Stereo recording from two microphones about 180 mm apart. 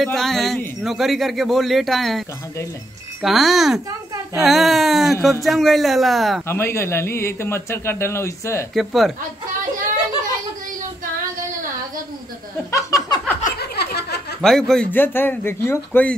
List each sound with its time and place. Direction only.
0.0 s a man's voice: centre (ahead or behind)
6.4 s a man's voice: 15° left (ahead or behind)
8.7 s a man's voice: centre (ahead or behind)
12.7 s a sound: 20° left (ahead or behind)
13.6 s a sound: 65° left (ahead or behind)
14.4 s a man's voice: 5° left (ahead or behind)